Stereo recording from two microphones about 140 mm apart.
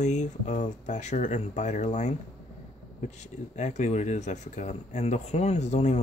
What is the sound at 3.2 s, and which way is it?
Speech, 55° left (ahead or behind).